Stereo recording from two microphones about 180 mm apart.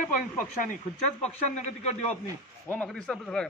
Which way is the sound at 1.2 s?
40° left (ahead or behind).